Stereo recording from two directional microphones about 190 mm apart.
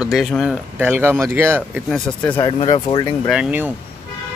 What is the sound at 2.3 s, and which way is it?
Speech, 30° left (ahead or behind).